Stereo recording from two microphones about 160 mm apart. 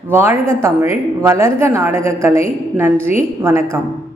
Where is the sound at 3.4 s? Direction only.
15° right (ahead or behind).